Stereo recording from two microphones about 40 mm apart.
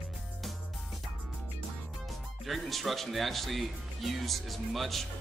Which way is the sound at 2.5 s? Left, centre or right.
Centre.